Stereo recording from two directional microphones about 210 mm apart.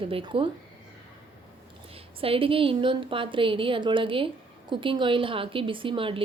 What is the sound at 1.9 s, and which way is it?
Speech, 25° right (ahead or behind).